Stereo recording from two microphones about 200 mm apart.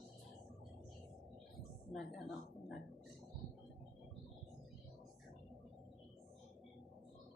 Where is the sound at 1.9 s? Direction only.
Centre (ahead or behind).